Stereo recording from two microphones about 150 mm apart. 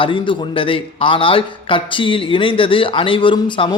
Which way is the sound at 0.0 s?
35° left (ahead or behind).